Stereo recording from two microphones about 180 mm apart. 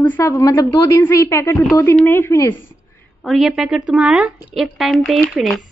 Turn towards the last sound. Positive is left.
turn(degrees=5)  # may be behind; listen again after turning